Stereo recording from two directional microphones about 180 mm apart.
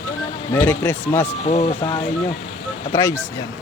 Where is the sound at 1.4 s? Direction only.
30° left (ahead or behind).